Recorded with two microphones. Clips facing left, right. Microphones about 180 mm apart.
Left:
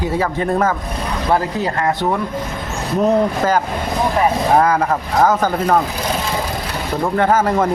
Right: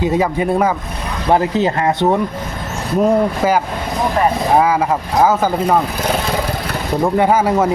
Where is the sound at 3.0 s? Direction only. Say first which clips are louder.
Right 1 dB; 10° right (ahead or behind).